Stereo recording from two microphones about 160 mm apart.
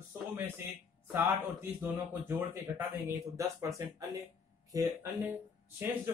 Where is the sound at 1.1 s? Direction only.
10° right (ahead or behind).